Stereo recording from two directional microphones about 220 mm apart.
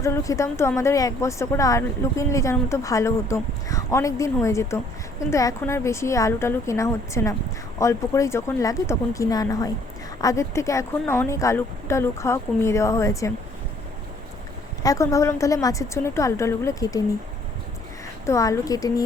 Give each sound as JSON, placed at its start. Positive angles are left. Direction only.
{"t": 0.0, "sound": "speech", "side_deg": 15}
{"t": 14.8, "sound": "speech", "side_deg": 15}
{"t": 18.3, "sound": "speech", "side_deg": 15}